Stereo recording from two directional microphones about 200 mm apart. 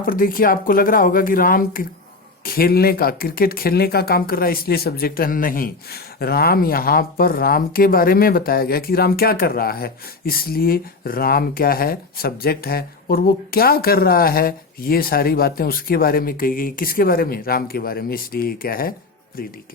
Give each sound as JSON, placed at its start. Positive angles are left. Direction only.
{"t": 0.0, "sound": "speech", "side_deg": 45}